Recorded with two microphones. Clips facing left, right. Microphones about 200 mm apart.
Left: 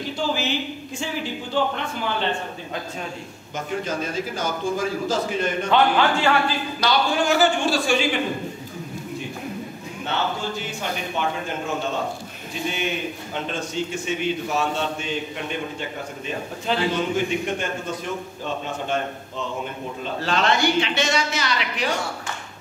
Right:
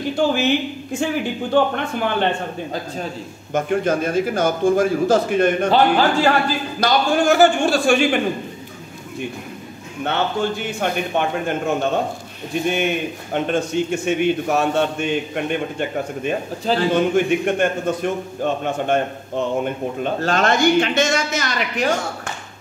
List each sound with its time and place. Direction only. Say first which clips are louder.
0.1 s a man's voice: right 7 dB; 55° right (ahead or behind)
3.5 s a man's voice: right 8 dB; 55° right (ahead or behind)
5.7 s speech: right 3 dB; 35° right (ahead or behind)
6.8 s a man's voice: right 4 dB; 50° right (ahead or behind)
10.0 s a man's voice: right 6 dB; 60° right (ahead or behind)